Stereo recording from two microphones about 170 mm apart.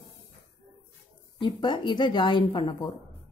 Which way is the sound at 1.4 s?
25° left (ahead or behind).